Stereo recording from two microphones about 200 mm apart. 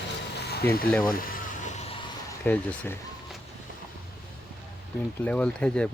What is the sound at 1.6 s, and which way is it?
Music, 35° left (ahead or behind).